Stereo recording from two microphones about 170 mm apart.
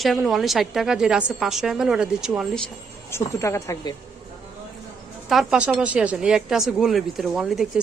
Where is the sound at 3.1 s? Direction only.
15° left (ahead or behind).